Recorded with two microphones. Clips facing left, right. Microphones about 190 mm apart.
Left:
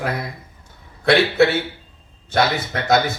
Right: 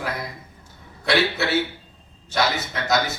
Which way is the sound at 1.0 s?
55° left (ahead or behind).